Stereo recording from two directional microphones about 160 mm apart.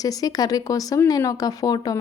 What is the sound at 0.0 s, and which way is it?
Speech, 25° left (ahead or behind).